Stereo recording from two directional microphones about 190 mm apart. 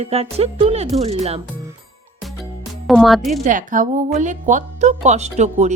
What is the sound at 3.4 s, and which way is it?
A woman's voice, 45° right (ahead or behind).